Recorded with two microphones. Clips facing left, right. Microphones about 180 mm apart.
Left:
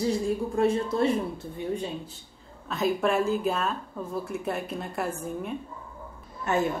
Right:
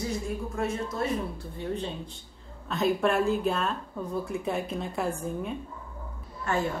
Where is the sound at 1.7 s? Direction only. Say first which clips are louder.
Left 1 dB; 10° left (ahead or behind).